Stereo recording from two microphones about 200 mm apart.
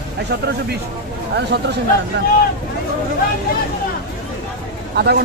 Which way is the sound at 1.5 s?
55° right (ahead or behind).